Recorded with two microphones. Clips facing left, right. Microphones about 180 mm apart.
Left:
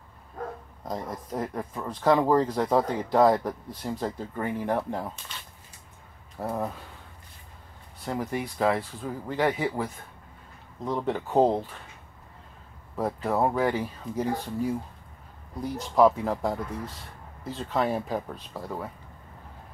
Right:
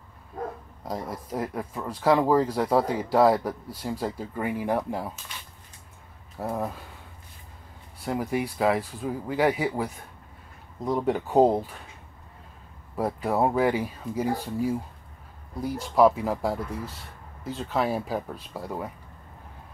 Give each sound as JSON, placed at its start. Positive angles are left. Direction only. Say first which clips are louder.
{"t": 0.8, "sound": "speech", "louder": "right 1 dB", "side_deg": -5}
{"t": 6.5, "sound": "speech", "louder": "even", "side_deg": -5}
{"t": 8.0, "sound": "speech", "louder": "right 3 dB", "side_deg": -10}
{"t": 12.9, "sound": "speech", "louder": "right 1 dB", "side_deg": -10}